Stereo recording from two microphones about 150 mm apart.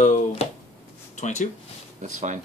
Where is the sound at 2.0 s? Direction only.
55° right (ahead or behind).